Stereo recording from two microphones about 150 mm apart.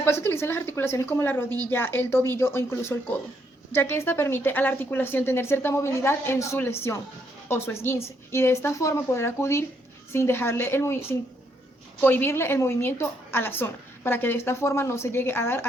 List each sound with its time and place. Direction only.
0.0 s a woman's voice: 15° left (ahead or behind)